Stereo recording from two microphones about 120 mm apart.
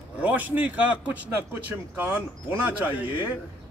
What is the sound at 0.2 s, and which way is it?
A man's voice, 15° right (ahead or behind).